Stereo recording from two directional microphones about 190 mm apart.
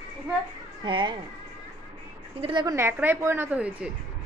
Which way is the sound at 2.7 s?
10° right (ahead or behind).